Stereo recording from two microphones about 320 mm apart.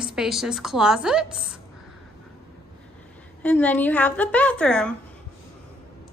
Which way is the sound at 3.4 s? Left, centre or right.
Centre.